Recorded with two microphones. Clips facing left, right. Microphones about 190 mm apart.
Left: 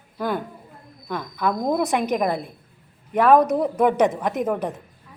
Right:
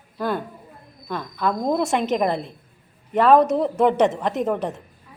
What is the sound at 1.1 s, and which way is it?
A woman's voice, 15° left (ahead or behind).